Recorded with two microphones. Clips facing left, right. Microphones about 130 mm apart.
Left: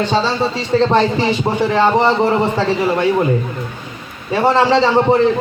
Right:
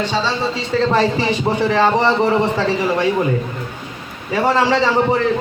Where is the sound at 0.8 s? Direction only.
25° left (ahead or behind).